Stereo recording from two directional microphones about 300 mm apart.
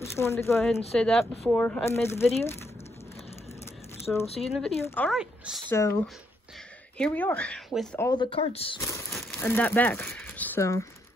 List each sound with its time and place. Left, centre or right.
0.0 s speech: centre
2.2 s speech: left
4.0 s speech: centre
7.0 s speech: centre